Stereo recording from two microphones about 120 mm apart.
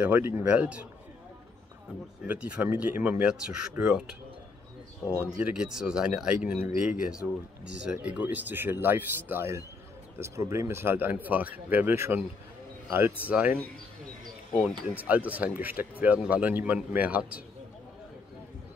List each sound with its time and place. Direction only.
0.0 s speech: 15° right (ahead or behind)
2.2 s speech: 10° right (ahead or behind)
5.2 s speech: 10° right (ahead or behind)
15.0 s speech: 10° right (ahead or behind)